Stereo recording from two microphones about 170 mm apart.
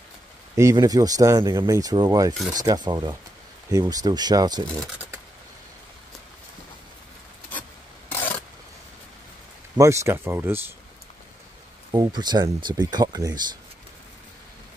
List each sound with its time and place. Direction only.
0.6 s speech: 20° right (ahead or behind)
8.1 s rub: 15° left (ahead or behind)
9.8 s speech: 15° right (ahead or behind)
11.9 s speech: 25° right (ahead or behind)